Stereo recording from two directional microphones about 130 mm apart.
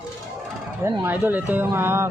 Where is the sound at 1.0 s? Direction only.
15° right (ahead or behind).